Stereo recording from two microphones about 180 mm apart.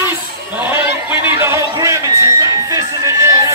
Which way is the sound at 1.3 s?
15° right (ahead or behind).